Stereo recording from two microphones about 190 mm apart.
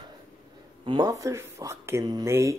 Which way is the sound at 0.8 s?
20° right (ahead or behind).